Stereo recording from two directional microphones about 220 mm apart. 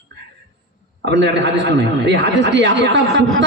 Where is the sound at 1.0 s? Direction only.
55° right (ahead or behind).